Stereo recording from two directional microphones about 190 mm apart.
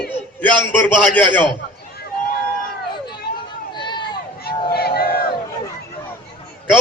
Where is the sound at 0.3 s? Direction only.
10° left (ahead or behind).